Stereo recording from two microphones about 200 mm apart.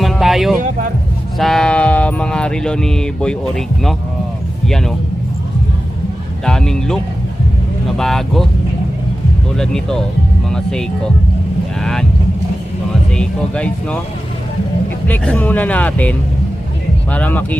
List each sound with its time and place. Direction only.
0.0 s music: centre (ahead or behind)
1.4 s speech: centre (ahead or behind)
6.4 s speech: 5° left (ahead or behind)
9.6 s speech: 5° left (ahead or behind)
13.1 s speech: 5° left (ahead or behind)
15.0 s speech: 5° left (ahead or behind)